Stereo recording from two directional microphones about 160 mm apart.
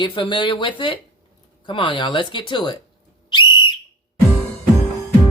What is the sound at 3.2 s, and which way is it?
Whistle, 30° left (ahead or behind).